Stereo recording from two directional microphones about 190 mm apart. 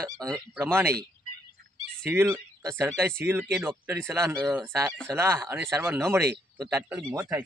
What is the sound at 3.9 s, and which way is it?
Speech, 15° right (ahead or behind).